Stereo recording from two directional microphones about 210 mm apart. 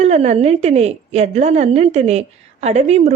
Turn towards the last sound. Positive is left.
turn(degrees=-30)  # may be behind; listen again after turning